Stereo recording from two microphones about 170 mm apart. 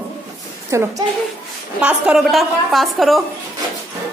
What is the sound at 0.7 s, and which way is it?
Speech, 15° right (ahead or behind).